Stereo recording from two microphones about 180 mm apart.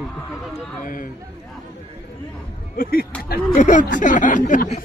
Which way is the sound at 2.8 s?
55° left (ahead or behind).